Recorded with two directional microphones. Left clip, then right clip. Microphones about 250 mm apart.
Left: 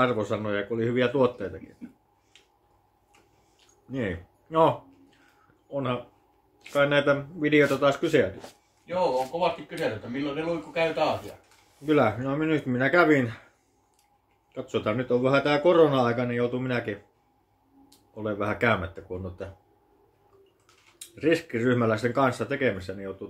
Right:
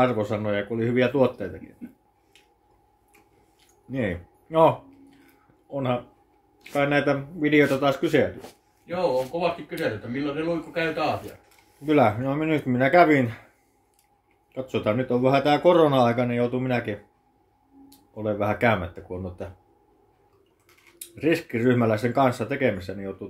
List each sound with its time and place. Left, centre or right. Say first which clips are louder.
0.0 s speech: right 2 dB; centre
3.9 s speech: right 3 dB; centre
9.4 s speech: right 1 dB; left
11.8 s speech: right 3 dB; centre
14.5 s speech: right 3 dB; centre
20.6 s speech: right 2 dB; centre